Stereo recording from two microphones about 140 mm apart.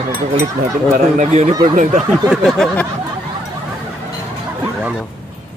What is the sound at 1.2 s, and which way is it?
Speech, 55° right (ahead or behind).